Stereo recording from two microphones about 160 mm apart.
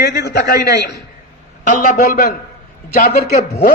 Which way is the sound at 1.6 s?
60° left (ahead or behind).